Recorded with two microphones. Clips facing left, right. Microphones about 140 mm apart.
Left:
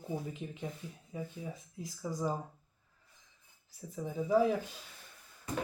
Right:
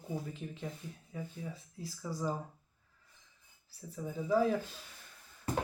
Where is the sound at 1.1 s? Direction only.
20° left (ahead or behind).